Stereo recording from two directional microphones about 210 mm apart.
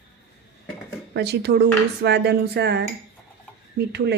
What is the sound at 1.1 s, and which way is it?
A woman's voice, 50° right (ahead or behind).